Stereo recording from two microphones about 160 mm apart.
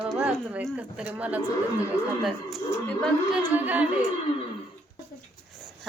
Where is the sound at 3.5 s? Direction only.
10° right (ahead or behind).